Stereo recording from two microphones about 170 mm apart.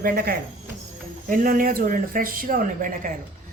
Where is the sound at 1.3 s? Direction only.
55° right (ahead or behind).